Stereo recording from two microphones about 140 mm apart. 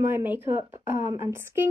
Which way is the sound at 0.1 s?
15° right (ahead or behind).